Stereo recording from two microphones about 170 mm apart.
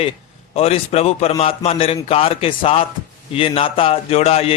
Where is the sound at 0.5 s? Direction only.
35° left (ahead or behind).